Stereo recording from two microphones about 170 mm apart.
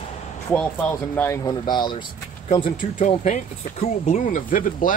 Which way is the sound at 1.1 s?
15° left (ahead or behind).